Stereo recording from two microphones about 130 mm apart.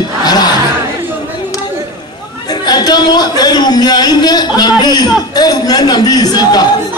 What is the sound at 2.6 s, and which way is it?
A man's voice, 30° left (ahead or behind).